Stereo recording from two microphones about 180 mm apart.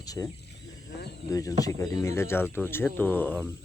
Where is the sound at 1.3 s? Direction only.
20° left (ahead or behind).